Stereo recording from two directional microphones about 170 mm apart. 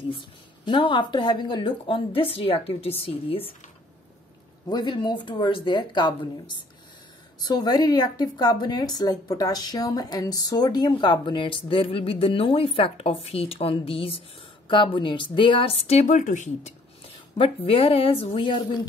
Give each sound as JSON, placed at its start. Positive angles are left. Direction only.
{"t": 0.1, "sound": "speech", "side_deg": 30}
{"t": 4.6, "sound": "a woman's voice", "side_deg": 25}
{"t": 17.4, "sound": "speech", "side_deg": 35}